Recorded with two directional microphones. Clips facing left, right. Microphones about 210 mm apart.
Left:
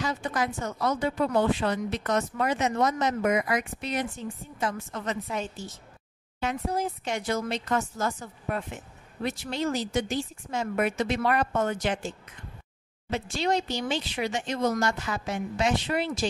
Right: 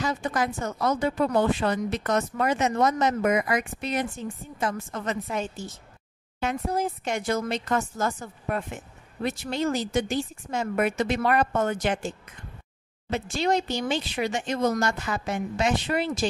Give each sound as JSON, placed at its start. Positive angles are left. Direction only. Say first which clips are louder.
{"t": 0.0, "sound": "speech", "louder": "right 2 dB", "side_deg": -45}
{"t": 13.1, "sound": "speech", "louder": "right 2 dB", "side_deg": -50}